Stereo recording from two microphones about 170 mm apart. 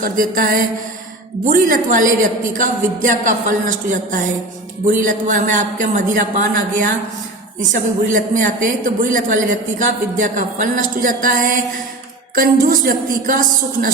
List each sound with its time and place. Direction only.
0.0 s a man's voice: 55° right (ahead or behind)
7.7 s a man's voice: 50° right (ahead or behind)
12.3 s music: 55° right (ahead or behind)